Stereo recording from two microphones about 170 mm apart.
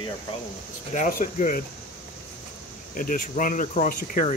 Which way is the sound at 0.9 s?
50° left (ahead or behind).